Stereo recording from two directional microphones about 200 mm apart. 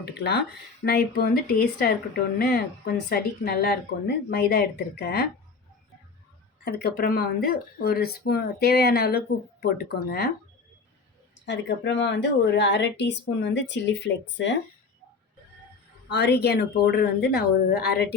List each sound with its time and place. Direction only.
0.0 s speech: 55° left (ahead or behind)
6.7 s speech: 55° left (ahead or behind)
11.4 s speech: 65° left (ahead or behind)
16.0 s speech: 55° left (ahead or behind)